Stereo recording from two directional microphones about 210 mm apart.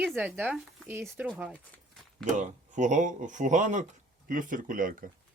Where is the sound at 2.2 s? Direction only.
35° right (ahead or behind).